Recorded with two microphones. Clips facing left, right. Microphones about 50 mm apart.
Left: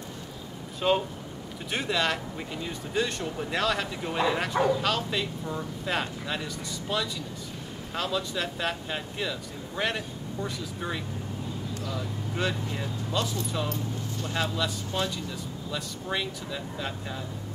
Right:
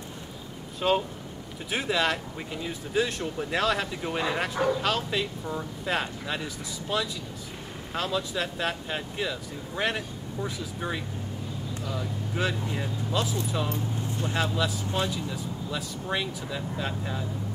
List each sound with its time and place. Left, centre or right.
0.7 s speech: centre
13.7 s speech: right
14.3 s speech: centre